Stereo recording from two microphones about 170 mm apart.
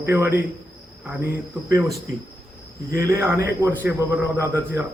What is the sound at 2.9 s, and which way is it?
A man's voice, 20° right (ahead or behind).